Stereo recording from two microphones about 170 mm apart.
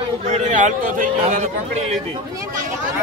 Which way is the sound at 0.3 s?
45° right (ahead or behind).